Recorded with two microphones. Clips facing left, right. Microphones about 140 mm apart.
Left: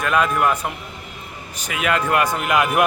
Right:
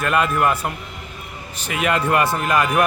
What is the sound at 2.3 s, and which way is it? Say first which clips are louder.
Speech: even; 15° left (ahead or behind).